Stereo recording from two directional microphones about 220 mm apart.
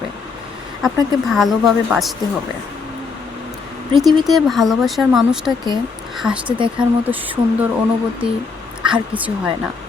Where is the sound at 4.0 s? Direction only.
Centre (ahead or behind).